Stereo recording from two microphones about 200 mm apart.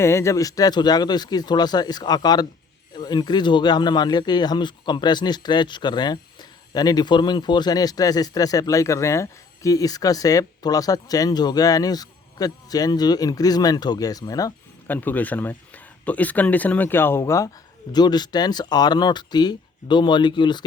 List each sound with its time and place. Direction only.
0.0 s speech: 15° left (ahead or behind)